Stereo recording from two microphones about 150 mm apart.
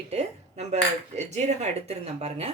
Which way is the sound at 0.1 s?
45° right (ahead or behind).